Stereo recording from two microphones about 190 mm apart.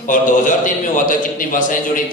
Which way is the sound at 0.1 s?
45° left (ahead or behind).